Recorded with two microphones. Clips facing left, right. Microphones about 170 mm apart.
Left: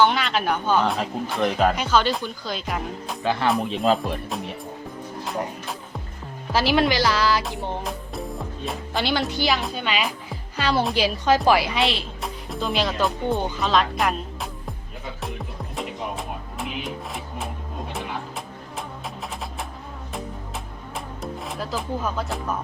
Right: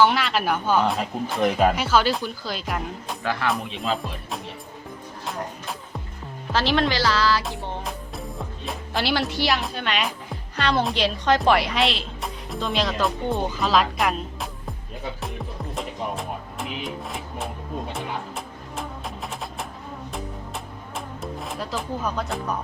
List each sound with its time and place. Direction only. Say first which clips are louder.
0.0 s speech: even; 5° right (ahead or behind)
3.2 s speech: left 3 dB; 25° left (ahead or behind)
6.5 s speech: left 2 dB; 10° left (ahead or behind)
7.9 s speech: left 3 dB; centre (ahead or behind)
15.7 s music: even; centre (ahead or behind)
20.9 s music: left 1 dB; centre (ahead or behind)